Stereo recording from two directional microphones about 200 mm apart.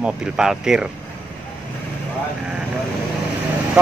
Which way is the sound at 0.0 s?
5° right (ahead or behind).